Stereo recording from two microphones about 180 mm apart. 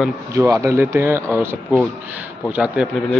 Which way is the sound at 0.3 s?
15° right (ahead or behind).